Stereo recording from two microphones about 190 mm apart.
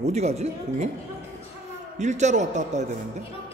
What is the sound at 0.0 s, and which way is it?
Speech, 35° right (ahead or behind).